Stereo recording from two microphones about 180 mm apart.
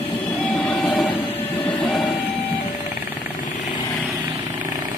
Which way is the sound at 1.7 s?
Centre (ahead or behind).